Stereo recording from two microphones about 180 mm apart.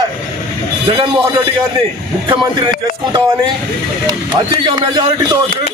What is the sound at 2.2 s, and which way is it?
Speech, 25° right (ahead or behind).